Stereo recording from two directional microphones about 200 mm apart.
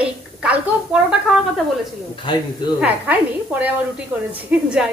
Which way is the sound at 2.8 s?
10° right (ahead or behind).